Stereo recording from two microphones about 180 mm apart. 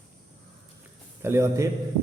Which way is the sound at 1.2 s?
15° right (ahead or behind).